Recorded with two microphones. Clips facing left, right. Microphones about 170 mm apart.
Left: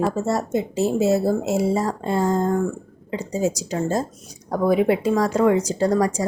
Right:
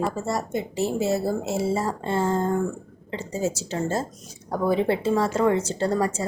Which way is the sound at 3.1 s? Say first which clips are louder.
Left 4 dB; 15° left (ahead or behind).